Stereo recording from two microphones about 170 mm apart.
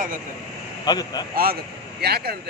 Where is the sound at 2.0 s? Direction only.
70° right (ahead or behind).